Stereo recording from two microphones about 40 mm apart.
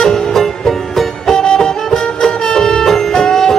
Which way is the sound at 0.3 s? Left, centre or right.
Centre.